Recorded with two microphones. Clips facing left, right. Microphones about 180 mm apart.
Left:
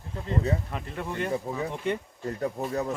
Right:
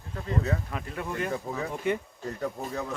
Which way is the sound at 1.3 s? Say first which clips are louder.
Left 2 dB; 20° left (ahead or behind).